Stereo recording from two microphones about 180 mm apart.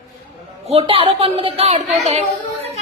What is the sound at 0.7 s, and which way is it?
A woman's voice, 30° right (ahead or behind).